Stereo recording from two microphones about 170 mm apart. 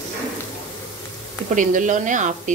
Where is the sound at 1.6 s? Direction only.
50° right (ahead or behind).